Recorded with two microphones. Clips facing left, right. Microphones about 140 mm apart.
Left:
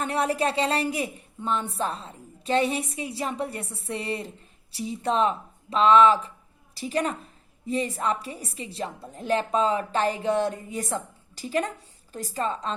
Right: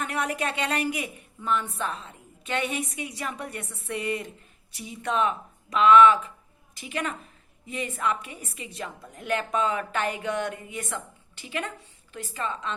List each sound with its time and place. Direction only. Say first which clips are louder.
0.0 s a woman's voice: left 4 dB; 30° left (ahead or behind)